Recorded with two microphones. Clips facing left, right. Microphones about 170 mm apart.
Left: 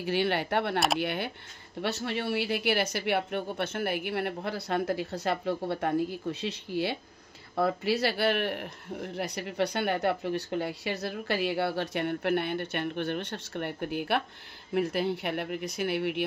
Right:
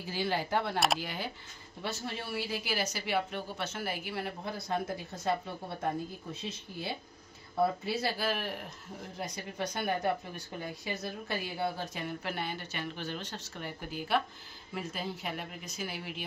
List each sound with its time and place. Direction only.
0.0 s a man's voice: 70° left (ahead or behind)